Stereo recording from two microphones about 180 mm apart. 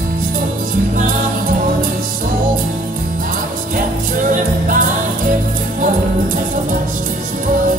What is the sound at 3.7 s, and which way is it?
Music, 50° right (ahead or behind).